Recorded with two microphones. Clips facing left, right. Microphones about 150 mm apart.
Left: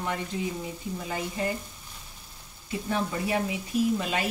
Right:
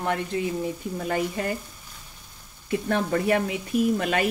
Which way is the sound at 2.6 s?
60° right (ahead or behind).